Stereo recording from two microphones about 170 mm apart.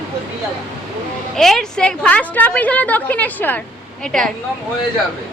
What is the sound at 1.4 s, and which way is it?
A woman's voice, centre (ahead or behind).